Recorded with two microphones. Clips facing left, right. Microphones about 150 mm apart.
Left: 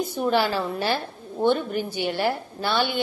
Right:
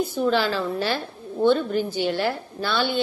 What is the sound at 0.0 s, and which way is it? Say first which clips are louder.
A woman's voice: right 1 dB; 15° left (ahead or behind).